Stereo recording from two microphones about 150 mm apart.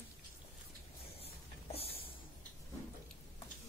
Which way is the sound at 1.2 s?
40° left (ahead or behind).